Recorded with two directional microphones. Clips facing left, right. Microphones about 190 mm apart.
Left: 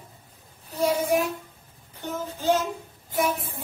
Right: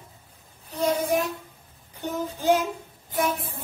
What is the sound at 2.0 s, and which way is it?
Child singing, 15° right (ahead or behind).